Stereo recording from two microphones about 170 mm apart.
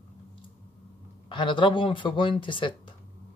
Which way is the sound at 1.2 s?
30° left (ahead or behind).